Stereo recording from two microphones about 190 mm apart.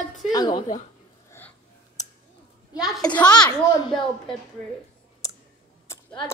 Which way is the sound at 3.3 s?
5° left (ahead or behind).